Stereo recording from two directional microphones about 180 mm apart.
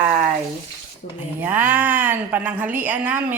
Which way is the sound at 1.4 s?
10° right (ahead or behind).